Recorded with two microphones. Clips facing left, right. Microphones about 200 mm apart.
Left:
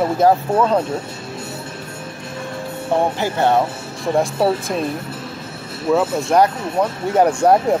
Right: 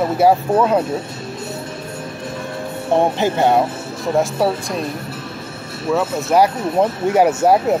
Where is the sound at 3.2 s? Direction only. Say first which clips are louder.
Right 2 dB; 15° right (ahead or behind).